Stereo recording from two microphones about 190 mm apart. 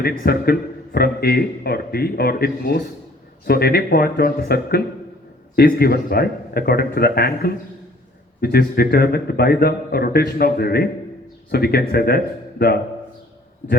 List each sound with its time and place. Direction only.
0.0 s a man's voice: 55° left (ahead or behind)